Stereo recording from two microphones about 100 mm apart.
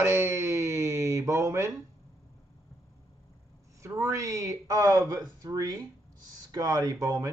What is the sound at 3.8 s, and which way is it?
Speech, 30° right (ahead or behind).